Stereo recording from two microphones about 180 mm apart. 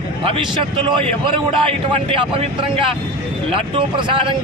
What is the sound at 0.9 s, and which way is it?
A man's voice, 30° right (ahead or behind).